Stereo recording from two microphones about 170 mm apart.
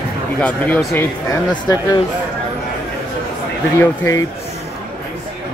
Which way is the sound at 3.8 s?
15° left (ahead or behind).